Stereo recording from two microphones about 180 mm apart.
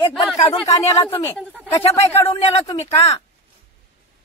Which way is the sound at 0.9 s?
30° left (ahead or behind).